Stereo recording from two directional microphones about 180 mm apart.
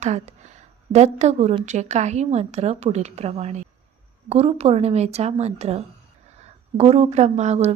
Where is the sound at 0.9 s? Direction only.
40° right (ahead or behind).